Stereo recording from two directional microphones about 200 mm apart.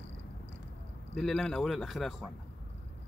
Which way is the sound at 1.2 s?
5° left (ahead or behind).